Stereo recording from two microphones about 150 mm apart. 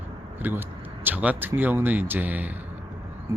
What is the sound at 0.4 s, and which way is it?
Speech, 10° right (ahead or behind).